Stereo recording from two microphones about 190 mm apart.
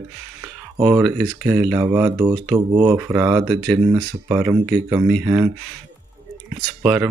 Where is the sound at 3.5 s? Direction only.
Centre (ahead or behind).